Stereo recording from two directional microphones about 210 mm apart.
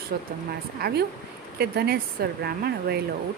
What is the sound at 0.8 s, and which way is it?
A woman's voice, 50° right (ahead or behind).